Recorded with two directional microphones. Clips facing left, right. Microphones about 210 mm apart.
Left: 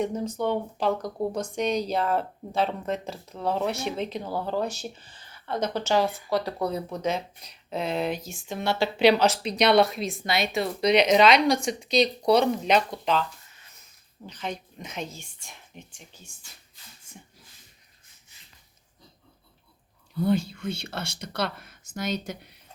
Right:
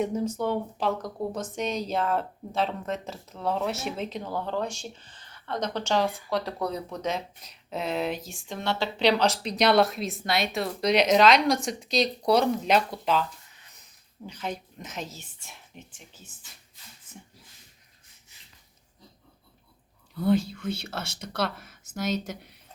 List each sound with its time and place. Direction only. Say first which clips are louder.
0.0 s speech: even; 5° right (ahead or behind)
14.3 s speech: even; 10° right (ahead or behind)
20.2 s speech: right 1 dB; centre (ahead or behind)